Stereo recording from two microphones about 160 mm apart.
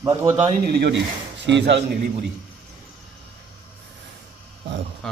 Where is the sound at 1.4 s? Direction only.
90° right.